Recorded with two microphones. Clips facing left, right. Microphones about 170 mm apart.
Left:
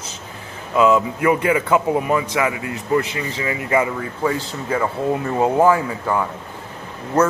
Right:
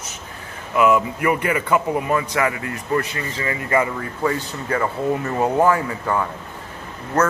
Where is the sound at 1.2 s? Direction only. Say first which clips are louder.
Left 3 dB; 15° left (ahead or behind).